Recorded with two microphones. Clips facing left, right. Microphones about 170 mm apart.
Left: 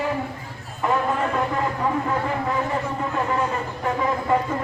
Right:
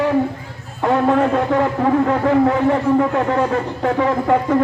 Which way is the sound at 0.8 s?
80° right.